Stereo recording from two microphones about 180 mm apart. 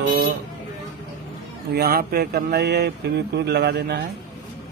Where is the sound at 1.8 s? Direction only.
60° right (ahead or behind).